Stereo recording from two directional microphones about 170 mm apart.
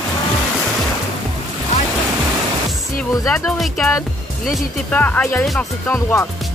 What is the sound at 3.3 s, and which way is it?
Speech, 15° left (ahead or behind).